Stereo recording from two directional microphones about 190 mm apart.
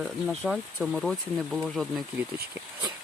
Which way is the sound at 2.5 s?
20° right (ahead or behind).